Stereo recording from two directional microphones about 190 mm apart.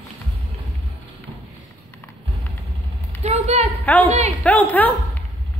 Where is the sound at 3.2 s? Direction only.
35° right (ahead or behind).